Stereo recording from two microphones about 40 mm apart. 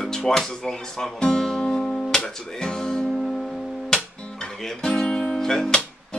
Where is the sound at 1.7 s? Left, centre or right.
Centre.